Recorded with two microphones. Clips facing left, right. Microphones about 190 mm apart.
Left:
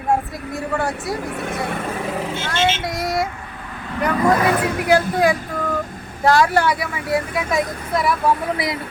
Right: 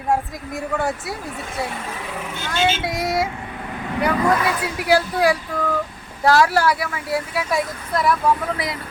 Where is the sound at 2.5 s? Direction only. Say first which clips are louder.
Right 1 dB; 5° right (ahead or behind).